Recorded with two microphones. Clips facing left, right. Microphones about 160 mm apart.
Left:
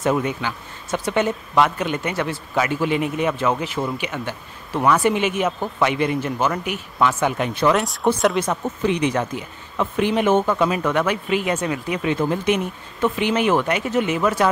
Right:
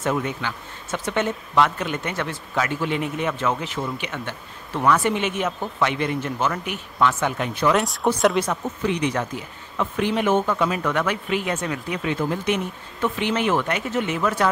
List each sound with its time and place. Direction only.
0.0 s speech: 15° left (ahead or behind)
7.7 s speech: centre (ahead or behind)
8.5 s speech: 20° left (ahead or behind)